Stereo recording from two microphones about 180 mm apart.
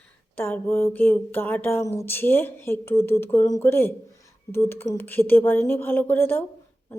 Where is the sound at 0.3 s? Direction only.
10° left (ahead or behind).